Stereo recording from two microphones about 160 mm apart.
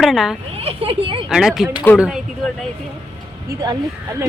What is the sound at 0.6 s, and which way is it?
Speech, 35° right (ahead or behind).